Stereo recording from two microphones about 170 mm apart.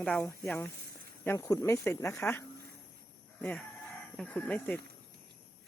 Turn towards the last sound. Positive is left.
turn(degrees=5)  # may be behind; listen again after turning